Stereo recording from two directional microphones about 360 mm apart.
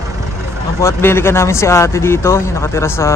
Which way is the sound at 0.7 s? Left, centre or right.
Centre.